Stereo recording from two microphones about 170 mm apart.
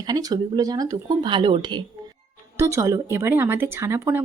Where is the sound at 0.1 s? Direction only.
25° right (ahead or behind).